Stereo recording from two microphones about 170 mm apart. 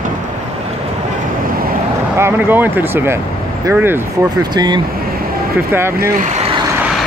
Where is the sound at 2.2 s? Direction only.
15° right (ahead or behind).